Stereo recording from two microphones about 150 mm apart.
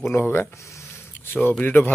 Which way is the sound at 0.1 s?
15° left (ahead or behind).